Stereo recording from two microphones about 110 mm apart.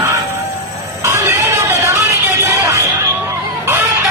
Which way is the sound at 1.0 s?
25° right (ahead or behind).